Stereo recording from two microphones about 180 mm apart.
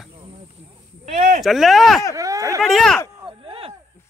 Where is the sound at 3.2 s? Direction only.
30° right (ahead or behind).